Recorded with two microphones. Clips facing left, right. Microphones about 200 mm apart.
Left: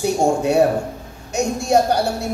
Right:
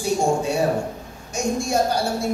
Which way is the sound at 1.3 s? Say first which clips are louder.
Left 4 dB; 65° left (ahead or behind).